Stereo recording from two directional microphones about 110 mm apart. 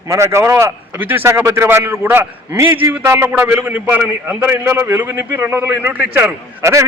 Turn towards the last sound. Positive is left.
turn(degrees=-25)  # may be behind; listen again after turning